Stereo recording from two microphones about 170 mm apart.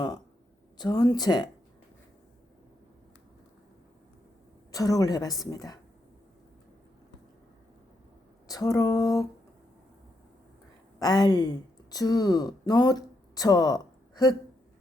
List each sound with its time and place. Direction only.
0.8 s a woman's voice: 25° left (ahead or behind)
4.7 s a woman's voice: 20° left (ahead or behind)
8.4 s a woman's voice: 20° left (ahead or behind)
11.0 s speech: 25° left (ahead or behind)